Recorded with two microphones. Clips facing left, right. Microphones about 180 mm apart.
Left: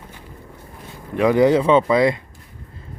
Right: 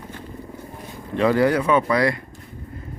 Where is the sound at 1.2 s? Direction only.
15° left (ahead or behind).